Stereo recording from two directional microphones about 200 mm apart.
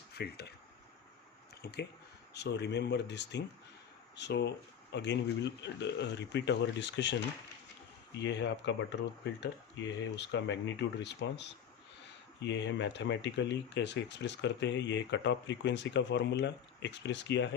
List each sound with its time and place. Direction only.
0.1 s speech: 55° left (ahead or behind)
1.6 s speech: 55° left (ahead or behind)
8.2 s speech: 60° left (ahead or behind)